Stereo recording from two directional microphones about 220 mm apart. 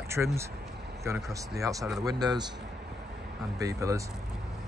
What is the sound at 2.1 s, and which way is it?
Speech, 20° right (ahead or behind).